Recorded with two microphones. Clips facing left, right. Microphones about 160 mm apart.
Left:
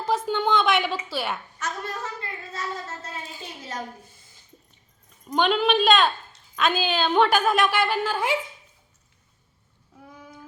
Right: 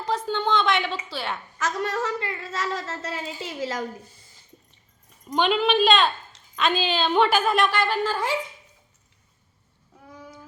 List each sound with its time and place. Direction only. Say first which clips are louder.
0.0 s a sound: left 1 dB; 5° left (ahead or behind)
1.5 s a woman's voice: right 6 dB; 85° right
5.2 s a woman's voice: even; centre (ahead or behind)